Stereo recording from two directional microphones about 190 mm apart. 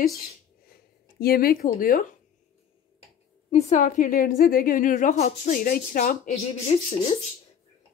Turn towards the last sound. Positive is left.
turn(degrees=30)  # may be behind; listen again after turning